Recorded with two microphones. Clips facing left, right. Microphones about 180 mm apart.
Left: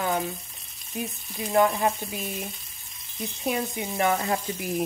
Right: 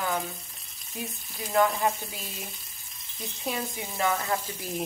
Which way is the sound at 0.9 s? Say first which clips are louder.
Left 5 dB; 15° left (ahead or behind).